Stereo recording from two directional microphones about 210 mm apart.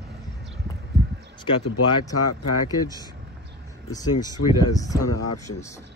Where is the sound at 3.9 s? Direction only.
20° left (ahead or behind).